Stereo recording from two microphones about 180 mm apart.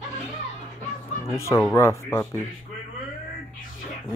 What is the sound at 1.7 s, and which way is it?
Speech, 15° left (ahead or behind).